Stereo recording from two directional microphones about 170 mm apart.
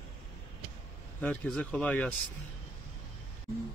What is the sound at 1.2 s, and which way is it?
Speech, 5° left (ahead or behind).